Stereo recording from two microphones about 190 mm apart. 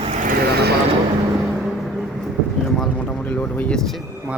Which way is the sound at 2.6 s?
5° left (ahead or behind).